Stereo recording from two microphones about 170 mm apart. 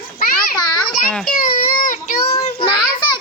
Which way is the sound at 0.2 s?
60° left (ahead or behind).